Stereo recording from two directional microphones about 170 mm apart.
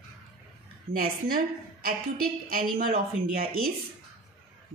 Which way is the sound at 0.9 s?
60° right (ahead or behind).